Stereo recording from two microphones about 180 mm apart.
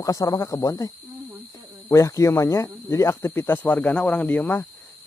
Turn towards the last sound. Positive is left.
turn(degrees=10)  # may be behind; listen again after turning